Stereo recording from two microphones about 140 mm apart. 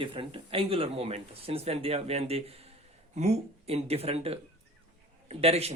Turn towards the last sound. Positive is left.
turn(degrees=-45)  # may be behind; listen again after turning